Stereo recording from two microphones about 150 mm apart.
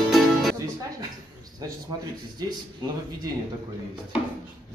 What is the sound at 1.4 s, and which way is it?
A man's voice, 25° right (ahead or behind).